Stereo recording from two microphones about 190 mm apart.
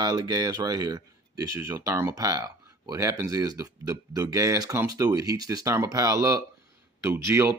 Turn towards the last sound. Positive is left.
turn(degrees=-15)  # may be behind; listen again after turning